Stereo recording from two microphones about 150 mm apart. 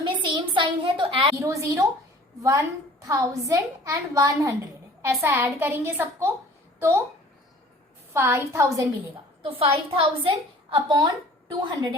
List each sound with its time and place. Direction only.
0.1 s a sound: 30° right (ahead or behind)
1.4 s a woman's voice: 20° right (ahead or behind)
8.1 s a woman's voice: 15° right (ahead or behind)
9.4 s a woman's voice: 40° right (ahead or behind)